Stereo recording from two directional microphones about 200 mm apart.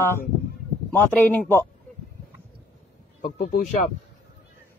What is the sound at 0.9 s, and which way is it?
Speech, 10° left (ahead or behind).